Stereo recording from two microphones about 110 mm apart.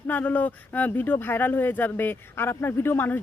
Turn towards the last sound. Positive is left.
turn(degrees=20)  # may be behind; listen again after turning